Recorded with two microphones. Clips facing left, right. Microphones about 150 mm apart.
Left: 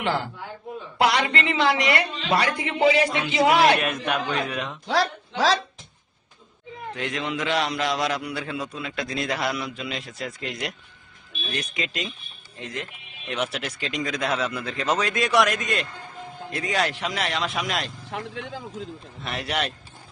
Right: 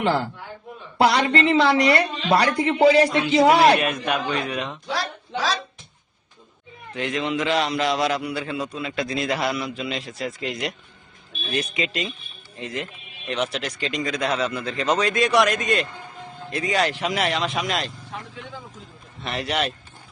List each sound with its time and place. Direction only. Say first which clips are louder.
0.0 s a woman's voice: right 4 dB; 35° right (ahead or behind)
3.8 s a man's voice: right 2 dB; centre (ahead or behind)
4.9 s speech: left 4 dB; 75° left (ahead or behind)
6.9 s a man's voice: right 4 dB; centre (ahead or behind)
18.1 s a man's voice: left 4 dB; 85° left
19.2 s a man's voice: right 3 dB; centre (ahead or behind)